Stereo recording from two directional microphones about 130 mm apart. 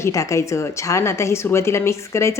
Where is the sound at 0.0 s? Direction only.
25° left (ahead or behind).